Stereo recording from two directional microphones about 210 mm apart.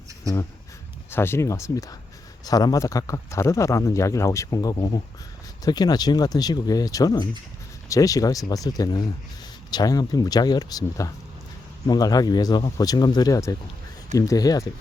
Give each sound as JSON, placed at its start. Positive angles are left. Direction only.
{"t": 1.1, "sound": "speech", "side_deg": 10}